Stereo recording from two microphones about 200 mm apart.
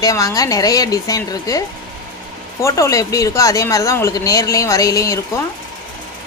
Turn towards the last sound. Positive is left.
turn(degrees=15)  # may be behind; listen again after turning